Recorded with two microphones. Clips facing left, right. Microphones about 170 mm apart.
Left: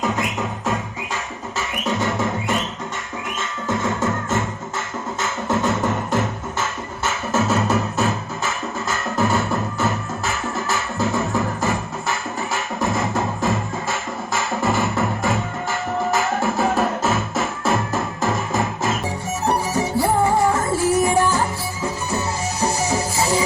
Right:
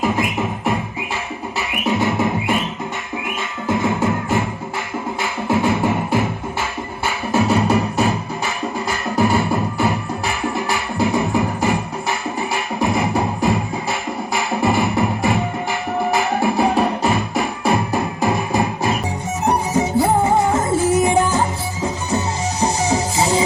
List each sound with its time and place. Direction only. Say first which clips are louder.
1.5 s music: right 3 dB; 15° right (ahead or behind)
3.7 s music: right 4 dB; 15° right (ahead or behind)
9.2 s music: right 3 dB; 10° right (ahead or behind)